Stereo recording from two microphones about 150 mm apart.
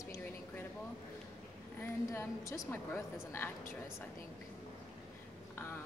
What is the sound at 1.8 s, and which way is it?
A woman's voice, 20° left (ahead or behind).